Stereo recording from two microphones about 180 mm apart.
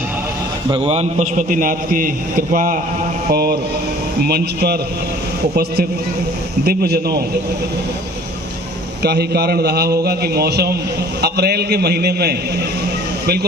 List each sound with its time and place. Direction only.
0.7 s a man's voice: 35° right (ahead or behind); by 4.8 s 60° right (ahead or behind)
6.7 s a man's voice: 60° right (ahead or behind)
9.0 s a man's voice: 65° right (ahead or behind)